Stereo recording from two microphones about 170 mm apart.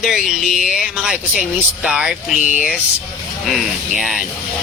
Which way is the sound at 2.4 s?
50° left (ahead or behind).